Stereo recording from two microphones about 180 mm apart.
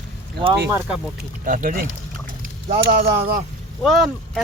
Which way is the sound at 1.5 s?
45° right (ahead or behind).